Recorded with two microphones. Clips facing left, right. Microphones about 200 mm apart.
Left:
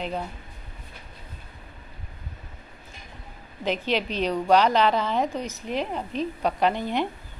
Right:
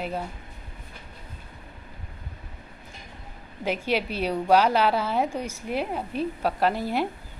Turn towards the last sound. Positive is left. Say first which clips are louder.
# even
turn(degrees=-5)  # may be behind; listen again after turning